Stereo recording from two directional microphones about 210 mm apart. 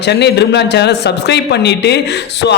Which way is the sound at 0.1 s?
55° left (ahead or behind).